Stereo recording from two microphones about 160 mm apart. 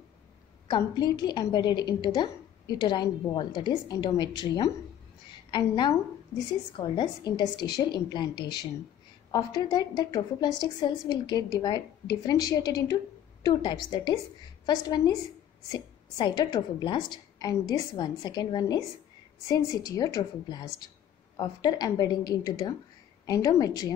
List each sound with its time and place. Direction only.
0.7 s a woman's voice: 25° left (ahead or behind)